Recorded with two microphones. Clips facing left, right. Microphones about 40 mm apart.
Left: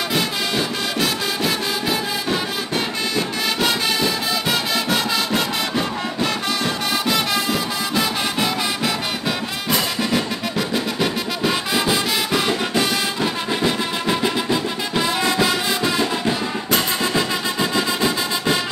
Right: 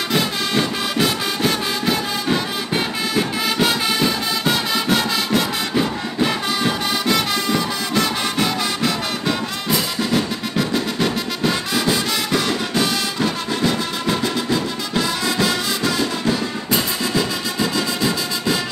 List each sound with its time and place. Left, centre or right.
0.1 s music: centre
6.2 s music: centre
7.2 s music: centre
9.9 s music: centre; by 18.6 s left